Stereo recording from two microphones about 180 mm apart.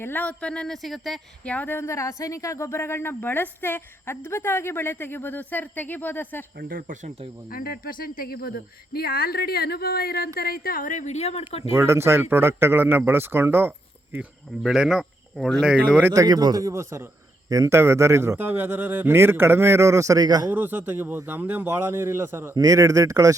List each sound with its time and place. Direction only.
0.0 s speech: 10° left (ahead or behind)
6.6 s speech: 55° right (ahead or behind)
7.5 s speech: 55° left (ahead or behind); by 11.7 s 35° left (ahead or behind)
11.7 s a man's voice: 15° right (ahead or behind)
16.1 s a man's voice: 20° right (ahead or behind)
20.5 s a man's voice: 10° right (ahead or behind)